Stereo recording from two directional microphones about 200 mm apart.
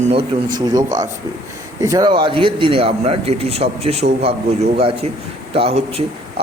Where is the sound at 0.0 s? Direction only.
35° right (ahead or behind).